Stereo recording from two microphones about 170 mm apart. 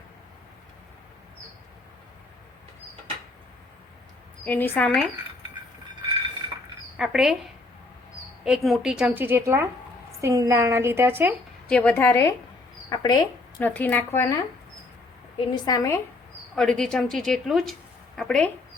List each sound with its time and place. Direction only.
4.4 s speech: 10° left (ahead or behind)
6.9 s speech: 5° right (ahead or behind)
8.4 s a woman's voice: centre (ahead or behind)
11.7 s speech: 10° left (ahead or behind); by 13.1 s 25° left (ahead or behind)
13.6 s speech: 10° left (ahead or behind)
15.5 s a woman's voice: 20° left (ahead or behind)
16.6 s a woman's voice: 5° left (ahead or behind)